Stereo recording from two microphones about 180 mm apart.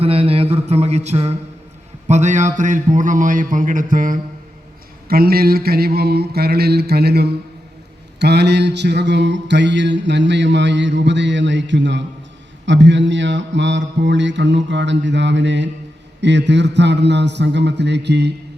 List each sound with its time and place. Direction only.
0.0 s mantra: 30° right (ahead or behind)
2.0 s a man's voice: 40° right (ahead or behind)
5.0 s mantra: 55° right (ahead or behind); by 15.7 s 80° right
16.2 s a man's voice: 75° right (ahead or behind)